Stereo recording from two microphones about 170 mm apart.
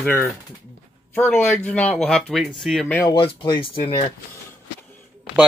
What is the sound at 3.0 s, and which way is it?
Speech, 30° left (ahead or behind).